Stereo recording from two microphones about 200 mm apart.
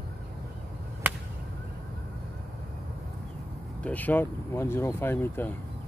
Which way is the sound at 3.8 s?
10° left (ahead or behind).